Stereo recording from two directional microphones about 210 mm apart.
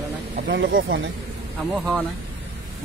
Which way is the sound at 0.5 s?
55° right (ahead or behind).